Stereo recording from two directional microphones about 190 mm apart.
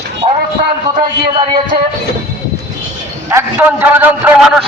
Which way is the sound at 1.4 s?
25° right (ahead or behind).